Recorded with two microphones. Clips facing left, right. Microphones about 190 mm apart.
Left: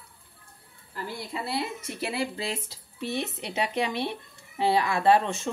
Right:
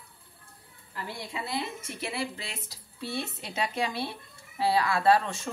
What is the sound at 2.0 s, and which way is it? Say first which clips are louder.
Speech: left 4 dB; 30° left (ahead or behind).